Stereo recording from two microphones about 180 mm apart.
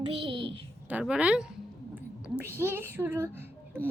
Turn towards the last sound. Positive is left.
turn(degrees=-15)  # may be behind; listen again after turning